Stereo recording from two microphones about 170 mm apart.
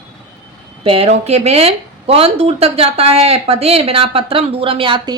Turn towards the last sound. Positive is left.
turn(degrees=-30)  # may be behind; listen again after turning